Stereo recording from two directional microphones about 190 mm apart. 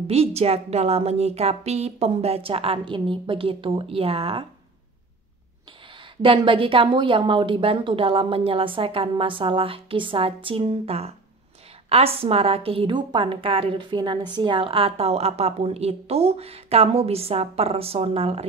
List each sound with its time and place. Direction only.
0.0 s a woman's voice: 30° right (ahead or behind)
6.2 s a woman's voice: 25° right (ahead or behind)